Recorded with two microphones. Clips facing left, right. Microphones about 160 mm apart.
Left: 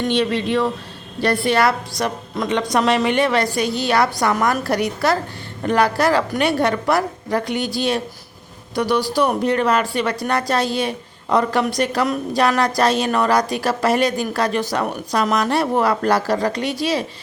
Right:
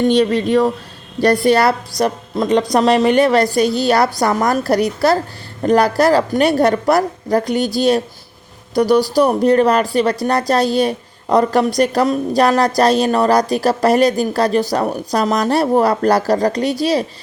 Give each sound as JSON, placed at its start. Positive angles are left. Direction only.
{"t": 0.1, "sound": "a woman's voice", "side_deg": -40}